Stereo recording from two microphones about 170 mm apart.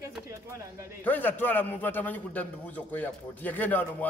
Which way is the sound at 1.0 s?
10° left (ahead or behind).